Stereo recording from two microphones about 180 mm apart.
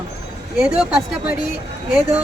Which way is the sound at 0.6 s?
5° right (ahead or behind).